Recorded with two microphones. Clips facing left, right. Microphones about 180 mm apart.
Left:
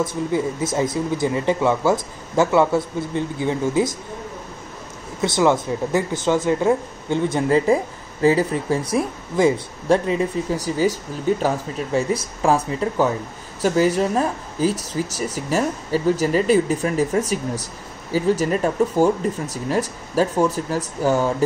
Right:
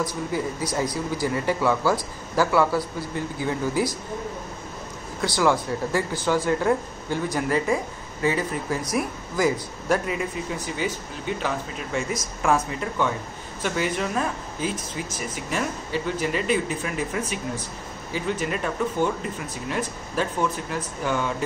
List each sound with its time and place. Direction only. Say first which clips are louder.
0.0 s speech: left 5 dB; 25° left (ahead or behind)
5.2 s speech: left 4 dB; 20° left (ahead or behind); by 17.2 s 40° left (ahead or behind)
18.4 s speech: left 7 dB; 40° left (ahead or behind)